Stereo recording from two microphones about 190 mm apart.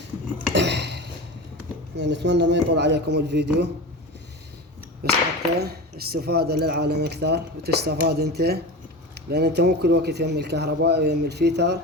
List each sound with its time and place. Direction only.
0.5 s a sound: 65° right (ahead or behind)
2.0 s speech: 65° right (ahead or behind)
5.0 s speech: 55° right (ahead or behind)